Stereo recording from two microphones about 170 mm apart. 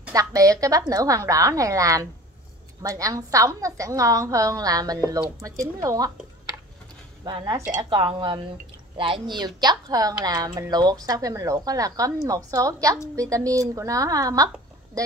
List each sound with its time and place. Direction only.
0.1 s speech: 20° right (ahead or behind)
7.2 s speech: 20° right (ahead or behind)
7.9 s speech: 30° right (ahead or behind)